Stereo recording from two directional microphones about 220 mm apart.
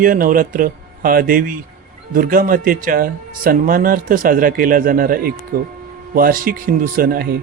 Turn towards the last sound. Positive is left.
turn(degrees=-45)  # may be behind; listen again after turning